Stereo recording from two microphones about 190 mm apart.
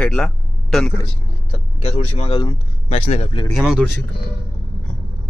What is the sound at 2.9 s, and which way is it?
Speech, 35° left (ahead or behind).